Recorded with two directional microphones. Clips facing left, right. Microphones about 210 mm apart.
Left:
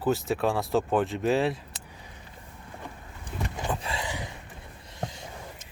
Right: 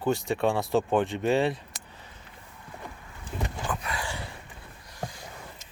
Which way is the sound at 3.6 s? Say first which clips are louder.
Left 1 dB; 25° left (ahead or behind).